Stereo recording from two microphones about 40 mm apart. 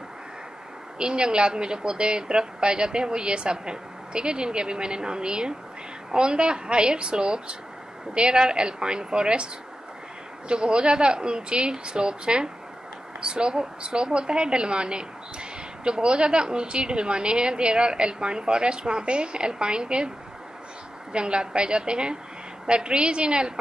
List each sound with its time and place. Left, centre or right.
0.9 s a woman's voice: right
10.5 s a woman's voice: right
21.1 s a woman's voice: right